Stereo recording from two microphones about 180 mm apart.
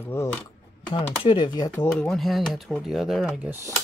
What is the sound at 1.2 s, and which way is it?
Speech, 25° left (ahead or behind).